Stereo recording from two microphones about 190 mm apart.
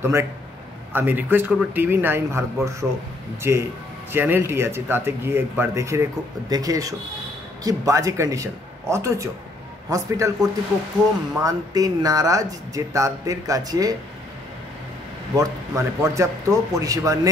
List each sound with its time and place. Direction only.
0.0 s speech: 15° right (ahead or behind)
11.4 s speech: 20° right (ahead or behind)
15.3 s speech: 15° right (ahead or behind)